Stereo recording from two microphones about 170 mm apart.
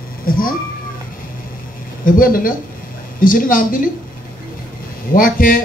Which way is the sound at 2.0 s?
55° left (ahead or behind).